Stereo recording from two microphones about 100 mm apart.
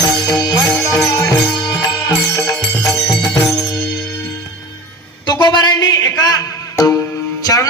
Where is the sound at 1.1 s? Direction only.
35° left (ahead or behind).